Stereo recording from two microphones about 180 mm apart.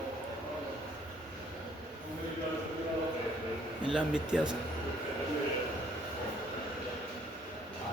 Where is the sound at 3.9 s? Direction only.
5° right (ahead or behind).